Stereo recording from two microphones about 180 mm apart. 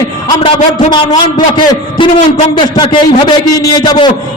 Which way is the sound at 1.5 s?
25° left (ahead or behind).